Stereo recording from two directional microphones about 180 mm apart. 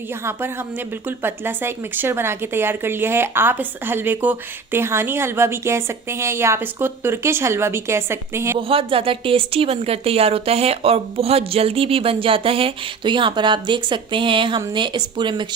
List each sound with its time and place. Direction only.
1.0 s speech: 10° right (ahead or behind)
8.5 s speech: 30° right (ahead or behind)